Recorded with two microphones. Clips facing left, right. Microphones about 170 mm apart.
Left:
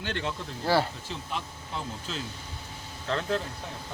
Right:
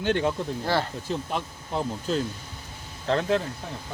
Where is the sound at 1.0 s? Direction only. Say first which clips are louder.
Right 6 dB; 45° right (ahead or behind).